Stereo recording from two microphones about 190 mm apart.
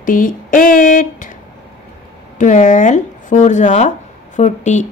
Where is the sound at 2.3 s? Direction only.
40° left (ahead or behind).